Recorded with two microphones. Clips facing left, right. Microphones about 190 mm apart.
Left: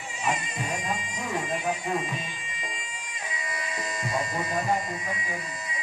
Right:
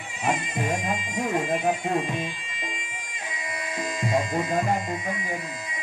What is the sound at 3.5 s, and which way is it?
Speech, 50° right (ahead or behind).